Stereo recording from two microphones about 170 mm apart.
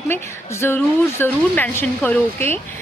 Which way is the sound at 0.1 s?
15° left (ahead or behind).